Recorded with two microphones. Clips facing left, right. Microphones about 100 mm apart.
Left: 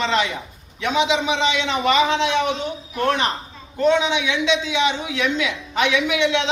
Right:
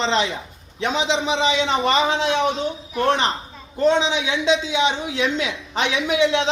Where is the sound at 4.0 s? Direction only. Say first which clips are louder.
Left 1 dB; 35° right (ahead or behind).